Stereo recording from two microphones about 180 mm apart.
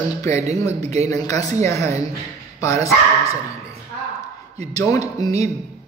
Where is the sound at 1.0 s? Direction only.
20° left (ahead or behind).